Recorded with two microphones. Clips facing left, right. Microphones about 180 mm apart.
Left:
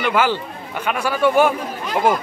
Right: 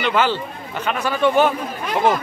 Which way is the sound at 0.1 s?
10° left (ahead or behind).